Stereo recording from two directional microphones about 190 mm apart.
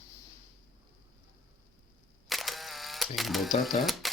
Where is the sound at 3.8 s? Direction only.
Centre (ahead or behind).